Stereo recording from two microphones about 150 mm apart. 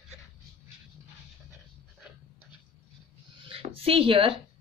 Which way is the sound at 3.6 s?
40° right (ahead or behind).